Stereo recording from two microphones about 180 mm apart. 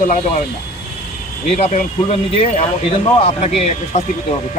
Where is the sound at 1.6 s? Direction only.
35° left (ahead or behind).